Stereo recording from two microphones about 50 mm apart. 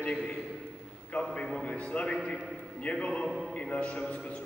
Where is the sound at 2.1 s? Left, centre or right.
Centre.